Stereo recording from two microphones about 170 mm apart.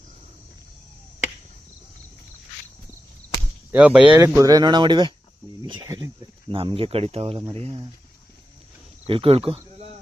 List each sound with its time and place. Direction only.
3.7 s speech: 5° right (ahead or behind); by 7.8 s 35° right (ahead or behind)
9.0 s speech: 35° right (ahead or behind)